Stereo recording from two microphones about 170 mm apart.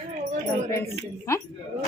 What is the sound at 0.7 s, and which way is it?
Speech, 15° left (ahead or behind).